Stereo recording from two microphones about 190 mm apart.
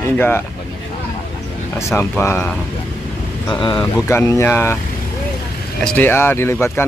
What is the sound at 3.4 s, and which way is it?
Speech, 25° left (ahead or behind).